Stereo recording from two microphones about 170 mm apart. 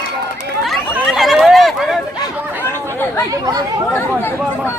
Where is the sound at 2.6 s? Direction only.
10° left (ahead or behind).